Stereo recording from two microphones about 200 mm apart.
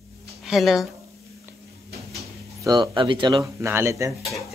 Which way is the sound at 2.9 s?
25° right (ahead or behind).